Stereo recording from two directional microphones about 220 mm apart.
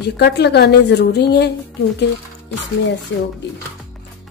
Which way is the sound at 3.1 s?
60° left (ahead or behind).